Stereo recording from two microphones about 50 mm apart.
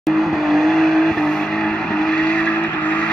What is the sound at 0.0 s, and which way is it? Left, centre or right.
Vehicle, centre.